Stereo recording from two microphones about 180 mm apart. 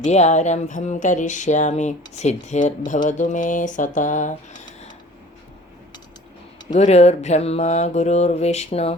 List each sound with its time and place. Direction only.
0.0 s mantra: 40° left (ahead or behind)
2.1 s speech: 40° left (ahead or behind)
6.7 s mantra: 35° left (ahead or behind)